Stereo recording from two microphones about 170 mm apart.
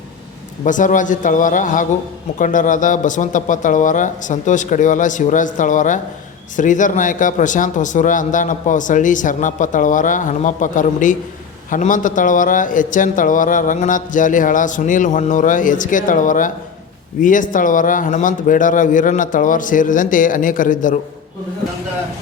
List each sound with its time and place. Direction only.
0.6 s speech: 50° left (ahead or behind)